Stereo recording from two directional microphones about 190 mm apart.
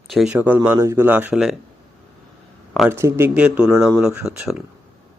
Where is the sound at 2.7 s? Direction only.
10° right (ahead or behind).